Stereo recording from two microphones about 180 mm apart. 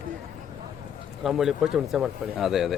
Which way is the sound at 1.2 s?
Centre (ahead or behind).